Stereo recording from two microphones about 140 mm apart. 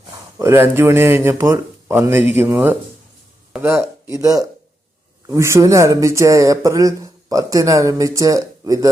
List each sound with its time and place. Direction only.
0.3 s speech: 20° right (ahead or behind)